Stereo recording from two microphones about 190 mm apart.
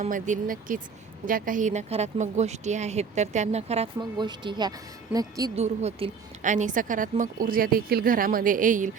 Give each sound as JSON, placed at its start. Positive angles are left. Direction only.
{"t": 0.1, "sound": "speech", "side_deg": -45}
{"t": 4.3, "sound": "speech", "side_deg": -25}
{"t": 5.5, "sound": "speech", "side_deg": -35}